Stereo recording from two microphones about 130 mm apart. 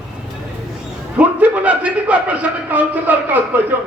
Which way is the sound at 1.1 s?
10° right (ahead or behind).